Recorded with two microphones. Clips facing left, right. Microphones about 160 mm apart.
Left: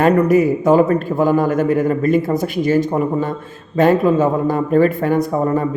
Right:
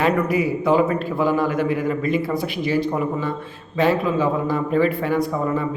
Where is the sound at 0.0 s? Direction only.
45° left (ahead or behind).